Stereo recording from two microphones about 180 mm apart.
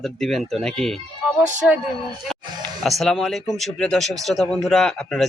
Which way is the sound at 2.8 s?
Centre (ahead or behind).